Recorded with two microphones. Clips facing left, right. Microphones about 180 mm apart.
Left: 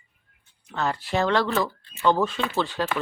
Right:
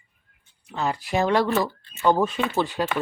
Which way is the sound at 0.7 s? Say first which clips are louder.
Right 1 dB; 10° right (ahead or behind).